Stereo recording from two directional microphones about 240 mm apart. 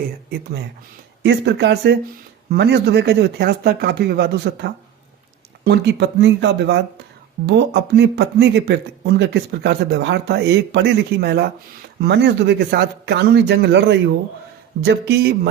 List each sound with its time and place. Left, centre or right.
1.2 s speech: right